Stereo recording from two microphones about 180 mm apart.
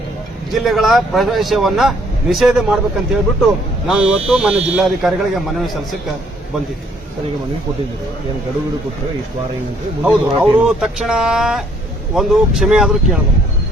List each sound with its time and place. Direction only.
0.5 s speech: centre (ahead or behind)
10.0 s speech: 5° right (ahead or behind)